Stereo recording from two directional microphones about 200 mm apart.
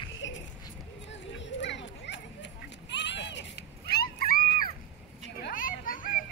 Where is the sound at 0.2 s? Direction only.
65° left (ahead or behind); by 4.4 s 50° left (ahead or behind).